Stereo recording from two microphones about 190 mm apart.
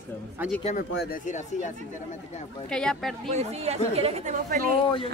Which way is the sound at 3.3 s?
35° right (ahead or behind).